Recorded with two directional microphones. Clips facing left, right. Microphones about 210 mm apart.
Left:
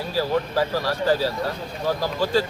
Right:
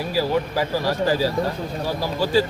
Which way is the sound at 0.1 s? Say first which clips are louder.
Even; 10° right (ahead or behind).